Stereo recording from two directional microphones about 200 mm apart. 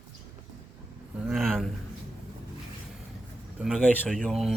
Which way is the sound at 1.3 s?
Centre (ahead or behind).